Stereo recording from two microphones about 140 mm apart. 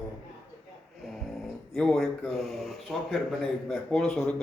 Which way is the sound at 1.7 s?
5° left (ahead or behind).